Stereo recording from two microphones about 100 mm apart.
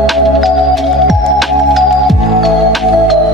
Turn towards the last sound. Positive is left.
turn(degrees=0)  # may be behind; listen again after turning